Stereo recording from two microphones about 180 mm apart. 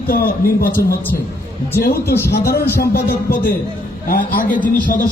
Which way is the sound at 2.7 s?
55° left (ahead or behind).